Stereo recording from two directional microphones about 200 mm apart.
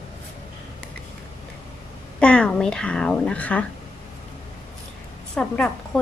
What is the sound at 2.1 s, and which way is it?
A child's voice, 5° left (ahead or behind).